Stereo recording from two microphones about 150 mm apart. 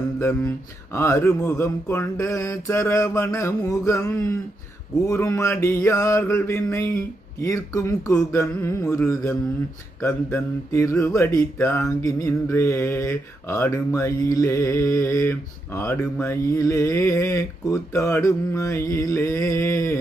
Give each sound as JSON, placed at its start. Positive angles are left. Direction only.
{"t": 0.9, "sound": "speech", "side_deg": 20}
{"t": 10.0, "sound": "mantra", "side_deg": 15}
{"t": 16.2, "sound": "speech", "side_deg": 20}